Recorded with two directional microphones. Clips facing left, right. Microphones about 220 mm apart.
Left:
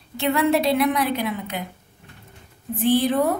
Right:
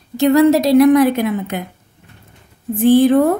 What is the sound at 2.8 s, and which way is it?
Speech, 50° right (ahead or behind).